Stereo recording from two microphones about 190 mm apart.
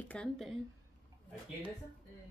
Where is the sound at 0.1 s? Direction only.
5° left (ahead or behind).